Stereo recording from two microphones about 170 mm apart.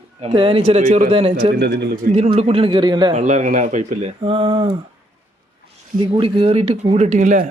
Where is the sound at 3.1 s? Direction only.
45° right (ahead or behind).